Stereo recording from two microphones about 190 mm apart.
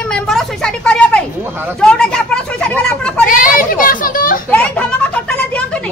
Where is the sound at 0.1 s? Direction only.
5° left (ahead or behind).